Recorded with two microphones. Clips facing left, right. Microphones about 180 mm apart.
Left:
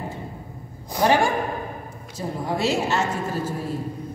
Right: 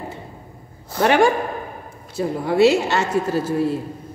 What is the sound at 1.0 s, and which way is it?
A woman's voice, 70° right (ahead or behind).